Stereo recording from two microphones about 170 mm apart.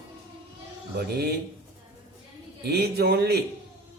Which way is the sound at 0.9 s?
70° right (ahead or behind).